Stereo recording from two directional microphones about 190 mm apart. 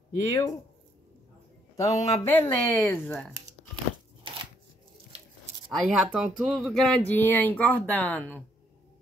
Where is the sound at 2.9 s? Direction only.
5° left (ahead or behind).